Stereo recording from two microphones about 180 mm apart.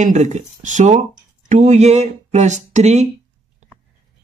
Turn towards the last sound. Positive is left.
turn(degrees=-40)  # may be behind; listen again after turning